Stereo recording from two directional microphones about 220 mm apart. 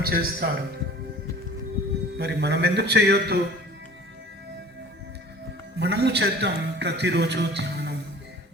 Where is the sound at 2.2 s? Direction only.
50° right (ahead or behind).